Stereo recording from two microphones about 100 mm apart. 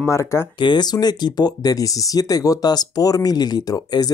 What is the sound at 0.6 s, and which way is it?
Speech, 50° left (ahead or behind).